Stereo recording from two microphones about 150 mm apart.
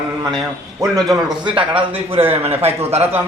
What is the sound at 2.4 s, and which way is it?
Speech, 40° right (ahead or behind).